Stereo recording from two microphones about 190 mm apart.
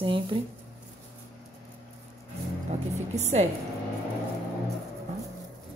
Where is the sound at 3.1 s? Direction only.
35° right (ahead or behind).